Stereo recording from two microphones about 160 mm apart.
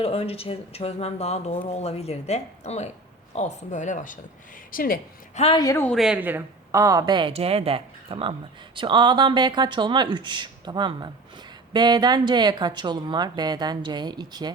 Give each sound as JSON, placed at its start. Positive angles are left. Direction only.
{"t": 0.0, "sound": "a woman's voice", "side_deg": 40}
{"t": 5.5, "sound": "speech", "side_deg": 15}
{"t": 5.9, "sound": "a woman's voice", "side_deg": -5}